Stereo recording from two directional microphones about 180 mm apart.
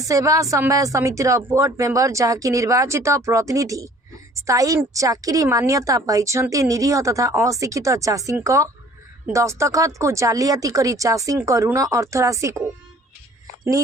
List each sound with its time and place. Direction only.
0.0 s a woman's voice: 20° right (ahead or behind)